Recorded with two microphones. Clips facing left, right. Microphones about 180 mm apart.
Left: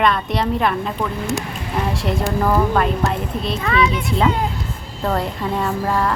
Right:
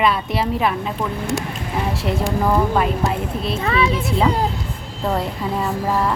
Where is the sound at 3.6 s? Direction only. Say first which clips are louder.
Left 1 dB; 30° right (ahead or behind).